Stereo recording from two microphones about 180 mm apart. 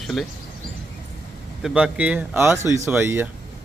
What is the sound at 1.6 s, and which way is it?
Speech, 5° right (ahead or behind).